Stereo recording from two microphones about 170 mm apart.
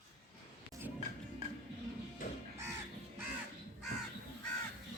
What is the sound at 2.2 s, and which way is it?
Crow, 55° left (ahead or behind).